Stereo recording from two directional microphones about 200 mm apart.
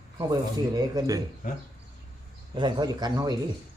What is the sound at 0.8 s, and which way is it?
Speech, 20° right (ahead or behind).